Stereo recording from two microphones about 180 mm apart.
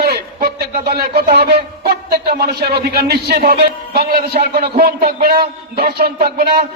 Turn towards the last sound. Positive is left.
turn(degrees=-60)  # may be behind; listen again after turning